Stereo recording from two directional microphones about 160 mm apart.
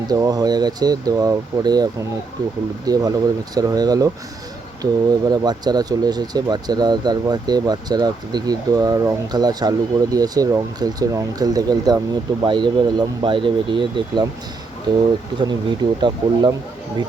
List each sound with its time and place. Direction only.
0.1 s speech: 25° right (ahead or behind)
15.4 s speech: 25° right (ahead or behind)